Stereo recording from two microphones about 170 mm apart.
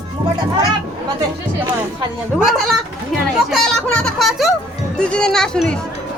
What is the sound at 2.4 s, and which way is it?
Speech, centre (ahead or behind).